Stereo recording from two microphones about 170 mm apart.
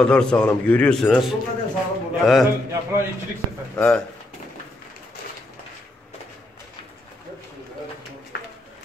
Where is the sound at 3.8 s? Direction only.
5° left (ahead or behind).